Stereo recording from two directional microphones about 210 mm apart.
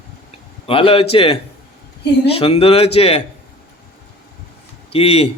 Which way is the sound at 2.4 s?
25° left (ahead or behind).